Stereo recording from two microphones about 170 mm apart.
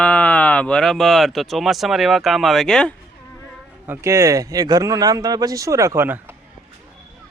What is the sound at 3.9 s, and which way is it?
Speech, 15° right (ahead or behind).